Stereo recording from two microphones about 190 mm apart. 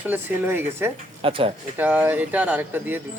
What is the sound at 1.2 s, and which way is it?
Speech, 30° right (ahead or behind).